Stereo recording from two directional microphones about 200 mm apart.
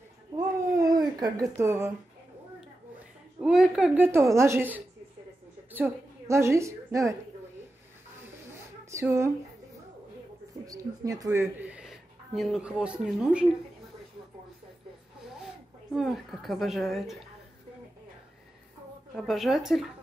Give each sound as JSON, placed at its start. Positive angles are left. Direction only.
{"t": 0.4, "sound": "a sound", "side_deg": -20}
{"t": 3.3, "sound": "a woman's voice", "side_deg": -5}
{"t": 8.5, "sound": "a sound", "side_deg": -15}
{"t": 10.7, "sound": "speech", "side_deg": -15}
{"t": 15.4, "sound": "speech", "side_deg": 0}
{"t": 19.1, "sound": "speech", "side_deg": 0}